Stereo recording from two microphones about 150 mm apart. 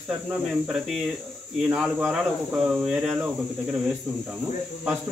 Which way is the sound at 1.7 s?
5° right (ahead or behind).